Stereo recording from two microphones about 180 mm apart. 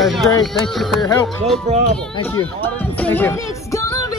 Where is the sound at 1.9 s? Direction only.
5° left (ahead or behind).